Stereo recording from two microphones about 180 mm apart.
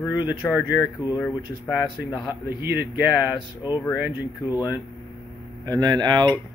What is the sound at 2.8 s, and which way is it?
Speech, 10° right (ahead or behind).